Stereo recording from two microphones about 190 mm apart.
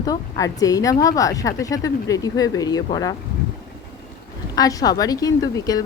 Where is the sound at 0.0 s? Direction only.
20° left (ahead or behind).